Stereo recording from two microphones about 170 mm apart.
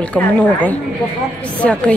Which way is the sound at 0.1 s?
10° left (ahead or behind).